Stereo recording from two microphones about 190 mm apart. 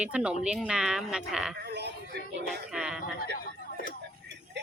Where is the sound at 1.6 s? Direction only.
60° right (ahead or behind).